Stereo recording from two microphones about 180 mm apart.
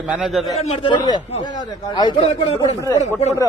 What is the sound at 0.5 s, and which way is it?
Speech, 35° left (ahead or behind).